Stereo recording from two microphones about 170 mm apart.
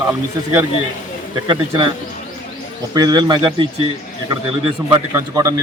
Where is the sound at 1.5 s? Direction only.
25° right (ahead or behind).